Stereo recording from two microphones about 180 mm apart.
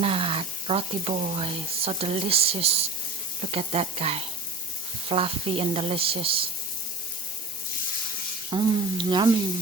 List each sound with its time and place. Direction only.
0.0 s speech: 30° right (ahead or behind)
8.4 s speech: 25° right (ahead or behind)